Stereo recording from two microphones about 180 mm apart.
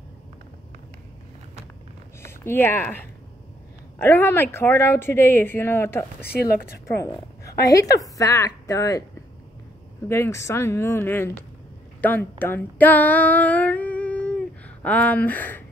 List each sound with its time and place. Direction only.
2.2 s a woman's voice: 10° left (ahead or behind)
6.9 s a sound: 15° left (ahead or behind)
7.6 s a woman's voice: 20° left (ahead or behind)
10.0 s a woman's voice: 15° left (ahead or behind)
12.0 s female singing: 10° left (ahead or behind)